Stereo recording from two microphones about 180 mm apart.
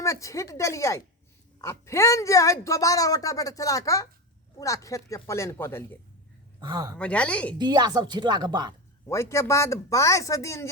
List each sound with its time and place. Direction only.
0.0 s speech: 15° left (ahead or behind)
6.6 s a woman's voice: 25° right (ahead or behind)
6.9 s speech: 5° left (ahead or behind)
7.6 s a woman's voice: 25° right (ahead or behind)
9.0 s speech: 15° left (ahead or behind)